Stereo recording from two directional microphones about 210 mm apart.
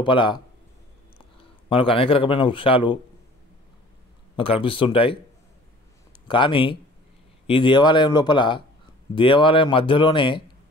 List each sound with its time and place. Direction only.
0.0 s a man's voice: 20° left (ahead or behind)
1.7 s a man's voice: 25° left (ahead or behind)
4.4 s a man's voice: 25° left (ahead or behind)